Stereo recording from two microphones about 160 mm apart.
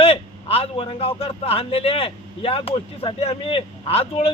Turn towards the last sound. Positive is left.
turn(degrees=35)  # may be behind; listen again after turning